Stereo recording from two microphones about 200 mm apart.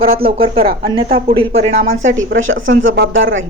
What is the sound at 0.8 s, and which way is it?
Speech, 25° right (ahead or behind).